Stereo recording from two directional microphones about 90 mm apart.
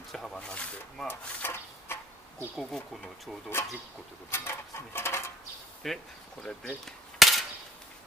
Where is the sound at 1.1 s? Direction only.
25° left (ahead or behind).